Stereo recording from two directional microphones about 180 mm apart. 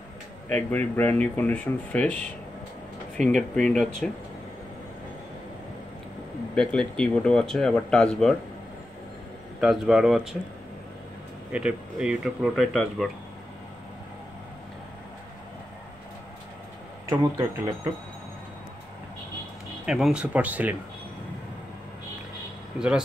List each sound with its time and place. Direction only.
0.5 s speech: 10° left (ahead or behind)
6.5 s speech: 5° left (ahead or behind)
9.6 s speech: 5° right (ahead or behind)
11.5 s speech: 5° right (ahead or behind)
17.1 s speech: 15° right (ahead or behind)
19.9 s speech: 5° right (ahead or behind)
22.8 s speech: 5° right (ahead or behind)